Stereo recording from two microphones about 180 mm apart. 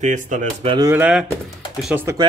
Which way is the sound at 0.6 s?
30° right (ahead or behind).